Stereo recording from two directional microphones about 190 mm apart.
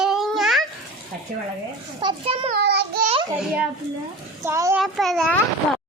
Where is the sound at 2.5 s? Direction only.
60° right (ahead or behind).